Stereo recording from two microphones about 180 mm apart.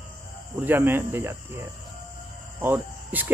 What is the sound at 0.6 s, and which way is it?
Speech, 10° right (ahead or behind).